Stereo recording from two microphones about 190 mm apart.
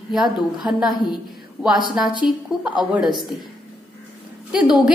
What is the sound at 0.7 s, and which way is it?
A woman's voice, centre (ahead or behind).